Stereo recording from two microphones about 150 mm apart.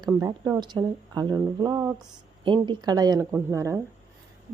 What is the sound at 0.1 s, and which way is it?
Speech, 25° right (ahead or behind).